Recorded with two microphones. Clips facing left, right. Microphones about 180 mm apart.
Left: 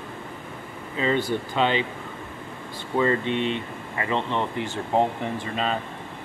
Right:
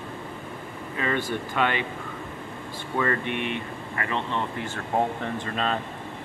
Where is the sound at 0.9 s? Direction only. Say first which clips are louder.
Left 4 dB; 20° left (ahead or behind).